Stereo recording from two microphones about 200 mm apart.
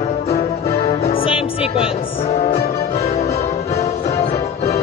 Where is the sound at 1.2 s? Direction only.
25° left (ahead or behind).